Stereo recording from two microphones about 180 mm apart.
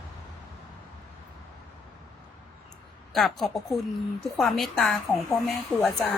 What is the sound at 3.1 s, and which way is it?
A woman's voice, centre (ahead or behind).